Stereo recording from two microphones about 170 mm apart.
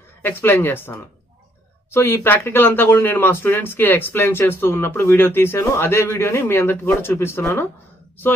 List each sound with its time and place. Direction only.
0.2 s speech: 10° left (ahead or behind)